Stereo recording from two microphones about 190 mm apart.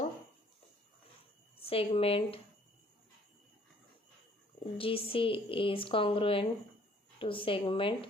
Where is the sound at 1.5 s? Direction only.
30° left (ahead or behind).